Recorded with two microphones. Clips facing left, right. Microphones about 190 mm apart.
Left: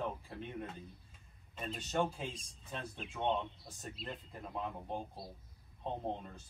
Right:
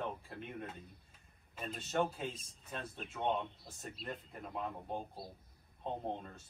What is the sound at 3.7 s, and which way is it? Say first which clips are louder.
Speech: right 1 dB; centre (ahead or behind).